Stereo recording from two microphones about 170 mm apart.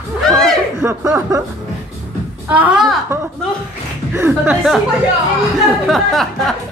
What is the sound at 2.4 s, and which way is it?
Speech, 5° right (ahead or behind).